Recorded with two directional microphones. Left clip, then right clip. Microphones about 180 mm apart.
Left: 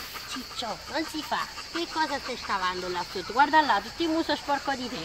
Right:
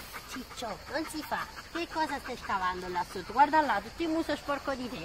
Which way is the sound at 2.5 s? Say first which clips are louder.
Left 2 dB; 20° right (ahead or behind).